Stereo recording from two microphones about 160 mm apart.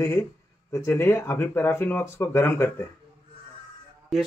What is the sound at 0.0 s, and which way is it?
Speech, 15° left (ahead or behind).